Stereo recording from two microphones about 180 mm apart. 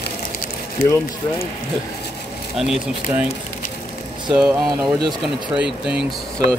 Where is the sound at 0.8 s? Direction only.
55° left (ahead or behind).